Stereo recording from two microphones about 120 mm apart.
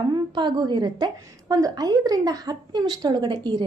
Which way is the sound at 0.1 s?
35° right (ahead or behind).